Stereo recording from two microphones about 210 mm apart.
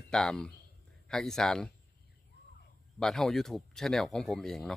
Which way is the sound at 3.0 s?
Centre (ahead or behind).